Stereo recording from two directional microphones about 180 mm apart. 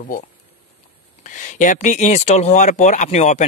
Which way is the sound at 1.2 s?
45° left (ahead or behind).